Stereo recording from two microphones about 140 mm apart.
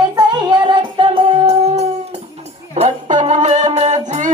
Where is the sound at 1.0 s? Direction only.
45° right (ahead or behind).